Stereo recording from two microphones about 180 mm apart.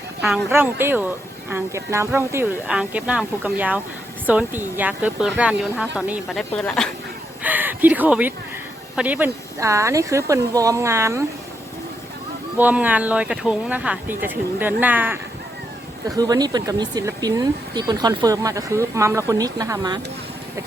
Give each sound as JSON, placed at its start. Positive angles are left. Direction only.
{"t": 0.2, "sound": "speech", "side_deg": 0}
{"t": 0.5, "sound": "speech", "side_deg": -10}
{"t": 6.6, "sound": "speech", "side_deg": 5}
{"t": 7.4, "sound": "speech", "side_deg": -10}
{"t": 12.5, "sound": "speech", "side_deg": -10}
{"t": 16.0, "sound": "speech", "side_deg": -20}